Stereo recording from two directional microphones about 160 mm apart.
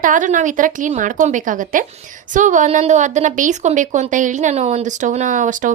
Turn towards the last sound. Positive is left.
turn(degrees=-50)  # may be behind; listen again after turning